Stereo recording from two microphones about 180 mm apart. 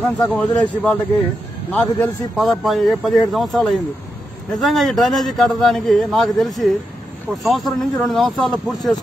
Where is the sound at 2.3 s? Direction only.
Centre (ahead or behind).